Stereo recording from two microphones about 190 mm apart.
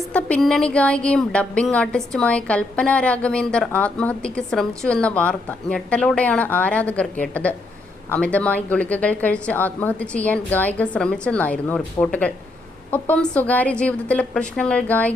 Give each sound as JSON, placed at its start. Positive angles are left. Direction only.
{"t": 0.1, "sound": "a woman's voice", "side_deg": 5}